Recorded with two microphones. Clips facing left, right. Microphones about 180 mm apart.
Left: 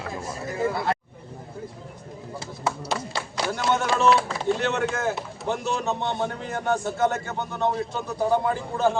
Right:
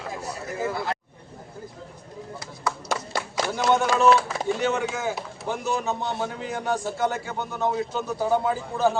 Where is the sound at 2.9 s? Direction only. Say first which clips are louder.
Right 1 dB; 50° right (ahead or behind).